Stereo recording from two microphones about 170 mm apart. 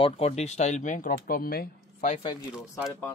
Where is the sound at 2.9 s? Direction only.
15° left (ahead or behind).